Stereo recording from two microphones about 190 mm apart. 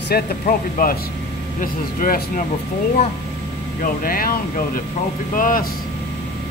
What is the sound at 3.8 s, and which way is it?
Speech, 50° left (ahead or behind).